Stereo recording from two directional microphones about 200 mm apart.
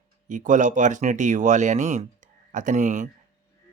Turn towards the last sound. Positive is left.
turn(degrees=-40)  # may be behind; listen again after turning